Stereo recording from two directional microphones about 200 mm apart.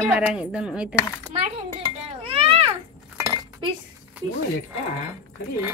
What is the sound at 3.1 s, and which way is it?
Chink, 20° right (ahead or behind).